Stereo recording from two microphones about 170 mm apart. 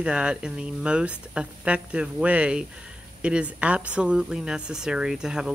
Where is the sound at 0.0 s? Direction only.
5° right (ahead or behind).